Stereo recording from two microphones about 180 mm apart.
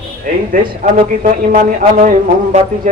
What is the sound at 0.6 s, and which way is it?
Speech, 50° right (ahead or behind).